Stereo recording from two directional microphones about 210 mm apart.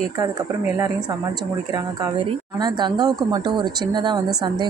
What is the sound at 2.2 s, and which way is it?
Speech, 20° right (ahead or behind).